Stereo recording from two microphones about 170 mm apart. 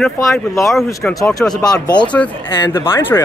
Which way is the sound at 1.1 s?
20° left (ahead or behind).